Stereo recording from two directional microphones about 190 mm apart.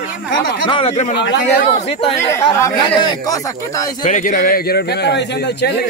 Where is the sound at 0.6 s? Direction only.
30° left (ahead or behind).